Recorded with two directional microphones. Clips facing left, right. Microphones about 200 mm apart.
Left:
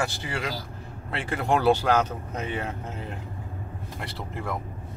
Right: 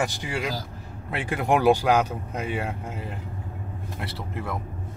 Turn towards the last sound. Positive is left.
turn(degrees=0)  # may be behind; listen again after turning